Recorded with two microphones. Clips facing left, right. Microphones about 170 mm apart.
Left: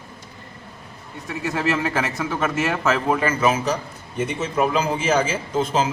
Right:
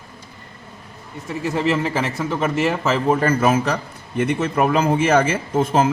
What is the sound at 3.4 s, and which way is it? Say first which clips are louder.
A man's voice: right 2 dB; 55° right (ahead or behind).